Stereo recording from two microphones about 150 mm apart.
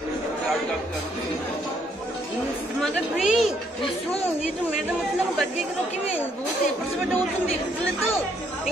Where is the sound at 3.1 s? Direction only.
5° right (ahead or behind).